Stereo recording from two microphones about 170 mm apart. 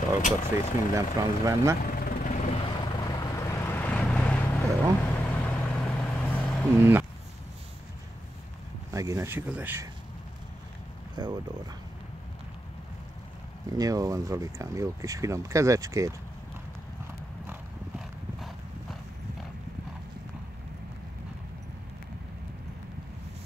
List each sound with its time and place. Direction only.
0.2 s speech: 45° left (ahead or behind)
0.9 s speech: 15° right (ahead or behind)
1.8 s vehicle: 60° left (ahead or behind); by 6.8 s centre (ahead or behind)
6.8 s speech: 15° right (ahead or behind)
8.9 s speech: 20° right (ahead or behind)
11.1 s speech: 25° right (ahead or behind)
13.7 s speech: 20° right (ahead or behind)
17.5 s horse: 5° right (ahead or behind)